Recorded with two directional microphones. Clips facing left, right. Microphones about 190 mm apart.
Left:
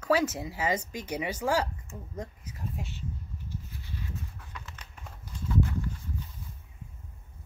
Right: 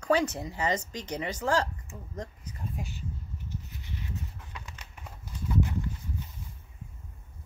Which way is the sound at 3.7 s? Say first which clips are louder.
Right 1 dB; 20° right (ahead or behind).